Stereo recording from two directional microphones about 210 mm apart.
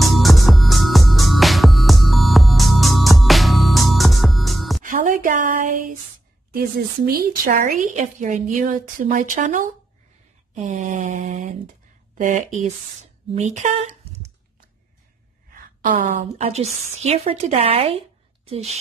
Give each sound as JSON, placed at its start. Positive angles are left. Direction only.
{"t": 0.0, "sound": "music", "side_deg": 0}
{"t": 4.8, "sound": "a sound", "side_deg": -40}
{"t": 7.1, "sound": "a woman's voice", "side_deg": -45}
{"t": 15.5, "sound": "a woman's voice", "side_deg": -40}